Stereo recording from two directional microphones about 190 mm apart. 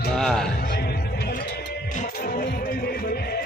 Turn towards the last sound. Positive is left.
turn(degrees=55)  # may be behind; listen again after turning